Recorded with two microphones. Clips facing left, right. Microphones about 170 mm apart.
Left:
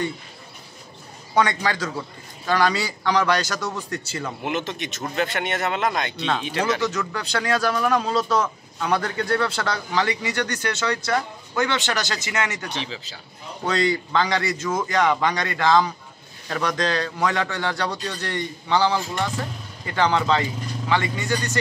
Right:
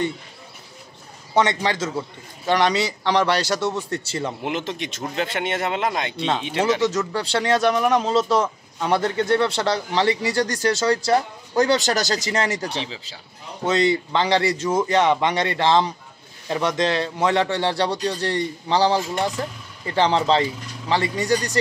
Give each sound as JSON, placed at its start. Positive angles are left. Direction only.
{"t": 1.3, "sound": "speech", "side_deg": -25}